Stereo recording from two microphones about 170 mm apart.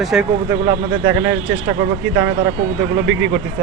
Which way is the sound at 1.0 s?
15° right (ahead or behind).